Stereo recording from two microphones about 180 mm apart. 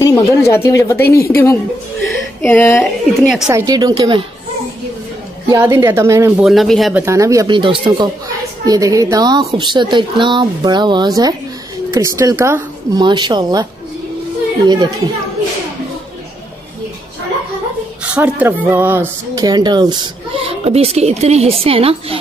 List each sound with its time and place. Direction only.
0.0 s a woman's voice: 15° left (ahead or behind)
2.8 s speech: centre (ahead or behind)
3.4 s speech: 20° right (ahead or behind)
5.5 s speech: 15° right (ahead or behind)
6.4 s speech: centre (ahead or behind)
7.0 s speech: 15° right (ahead or behind)
13.0 s speech: 25° right (ahead or behind)
18.0 s speech: 10° right (ahead or behind); by 22.2 s 35° right (ahead or behind)